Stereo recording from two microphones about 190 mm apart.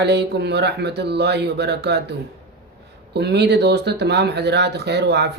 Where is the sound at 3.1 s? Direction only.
60° right (ahead or behind).